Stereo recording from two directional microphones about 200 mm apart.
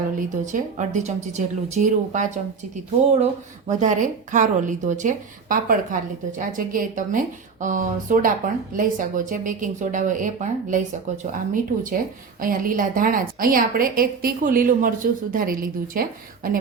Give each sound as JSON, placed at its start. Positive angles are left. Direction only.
{"t": 0.2, "sound": "a woman's voice", "side_deg": -40}
{"t": 3.7, "sound": "a woman's voice", "side_deg": -35}